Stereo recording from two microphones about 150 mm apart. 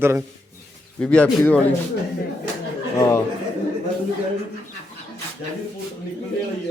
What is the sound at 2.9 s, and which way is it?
Speech, 20° left (ahead or behind).